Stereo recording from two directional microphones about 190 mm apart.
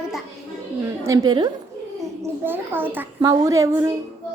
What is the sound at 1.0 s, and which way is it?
A woman's voice, 20° right (ahead or behind).